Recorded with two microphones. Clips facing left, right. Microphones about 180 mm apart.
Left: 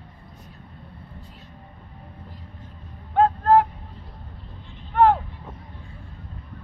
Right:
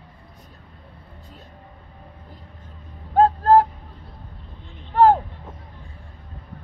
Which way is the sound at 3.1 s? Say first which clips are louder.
Right 2 dB; 35° right (ahead or behind).